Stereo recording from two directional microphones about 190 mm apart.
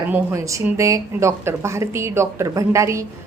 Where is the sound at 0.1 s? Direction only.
15° right (ahead or behind).